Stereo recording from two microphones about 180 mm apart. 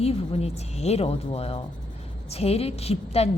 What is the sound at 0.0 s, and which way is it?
A woman's voice, 35° left (ahead or behind).